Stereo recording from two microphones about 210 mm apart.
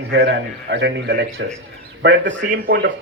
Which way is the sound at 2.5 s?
45° right (ahead or behind).